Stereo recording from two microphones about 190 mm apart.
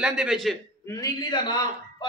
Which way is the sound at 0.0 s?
5° right (ahead or behind).